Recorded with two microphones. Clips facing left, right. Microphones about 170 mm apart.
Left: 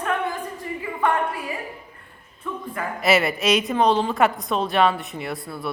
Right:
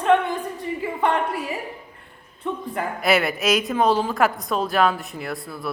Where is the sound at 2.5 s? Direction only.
20° right (ahead or behind).